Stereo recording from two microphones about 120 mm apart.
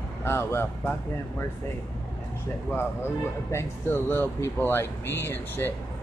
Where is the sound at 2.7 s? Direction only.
20° left (ahead or behind).